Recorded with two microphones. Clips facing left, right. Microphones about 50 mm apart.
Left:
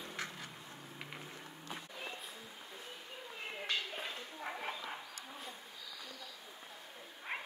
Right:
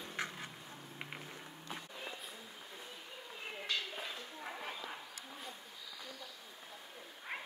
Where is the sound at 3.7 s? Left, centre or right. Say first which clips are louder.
Left 1 dB; left.